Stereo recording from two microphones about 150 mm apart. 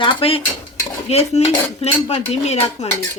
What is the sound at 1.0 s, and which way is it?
Speech, 45° left (ahead or behind).